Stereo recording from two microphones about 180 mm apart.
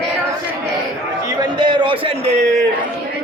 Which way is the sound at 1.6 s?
25° right (ahead or behind).